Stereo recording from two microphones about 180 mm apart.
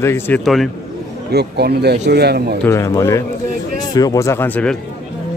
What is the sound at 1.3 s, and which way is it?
A man's voice, 65° right (ahead or behind).